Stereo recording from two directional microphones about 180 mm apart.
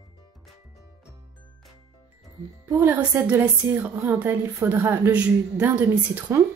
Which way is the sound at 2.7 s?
10° right (ahead or behind).